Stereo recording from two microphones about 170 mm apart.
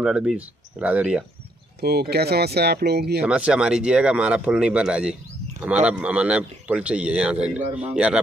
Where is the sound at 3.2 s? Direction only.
5° right (ahead or behind).